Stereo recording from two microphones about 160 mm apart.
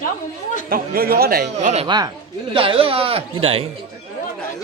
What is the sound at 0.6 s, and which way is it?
Speech, 70° right (ahead or behind).